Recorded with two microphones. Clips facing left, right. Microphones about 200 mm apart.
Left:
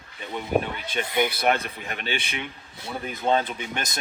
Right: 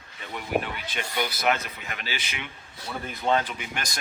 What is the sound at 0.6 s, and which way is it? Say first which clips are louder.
Speech: left 4 dB; 20° left (ahead or behind).